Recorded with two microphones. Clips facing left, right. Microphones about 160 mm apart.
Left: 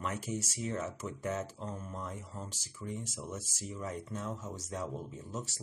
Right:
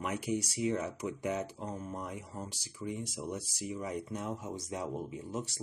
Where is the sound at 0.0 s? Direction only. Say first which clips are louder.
Right 3 dB; 15° right (ahead or behind).